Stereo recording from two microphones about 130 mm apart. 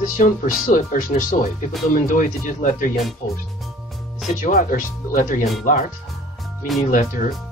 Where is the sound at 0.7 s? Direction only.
90° left.